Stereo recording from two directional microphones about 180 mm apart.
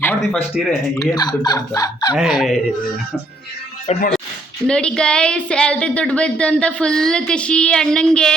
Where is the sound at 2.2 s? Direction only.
Centre (ahead or behind).